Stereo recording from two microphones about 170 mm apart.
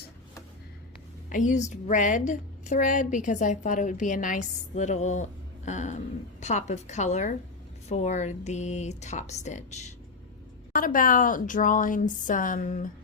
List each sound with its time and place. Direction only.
1.3 s a woman's voice: 45° left (ahead or behind)
10.8 s a woman's voice: 55° left (ahead or behind)